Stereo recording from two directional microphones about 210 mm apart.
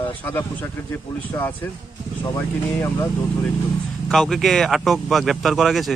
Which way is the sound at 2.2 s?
15° left (ahead or behind).